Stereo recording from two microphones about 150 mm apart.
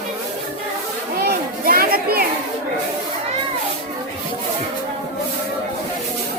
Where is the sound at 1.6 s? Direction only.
75° right (ahead or behind).